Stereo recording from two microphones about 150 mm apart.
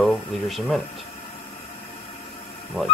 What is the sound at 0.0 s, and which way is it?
Speech, centre (ahead or behind).